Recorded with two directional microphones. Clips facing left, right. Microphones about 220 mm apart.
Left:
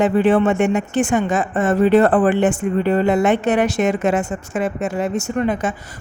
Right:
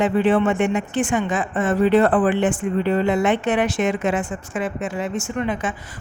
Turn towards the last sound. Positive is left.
turn(degrees=40)  # may be behind; listen again after turning